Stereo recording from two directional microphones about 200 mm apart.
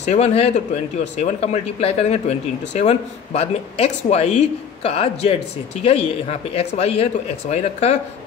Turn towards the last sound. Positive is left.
turn(degrees=35)  # may be behind; listen again after turning